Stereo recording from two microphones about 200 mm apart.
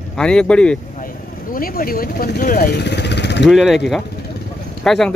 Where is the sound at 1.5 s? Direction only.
45° left (ahead or behind).